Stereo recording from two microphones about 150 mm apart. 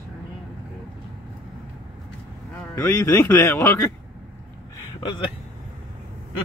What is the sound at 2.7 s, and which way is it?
Speech, 20° left (ahead or behind).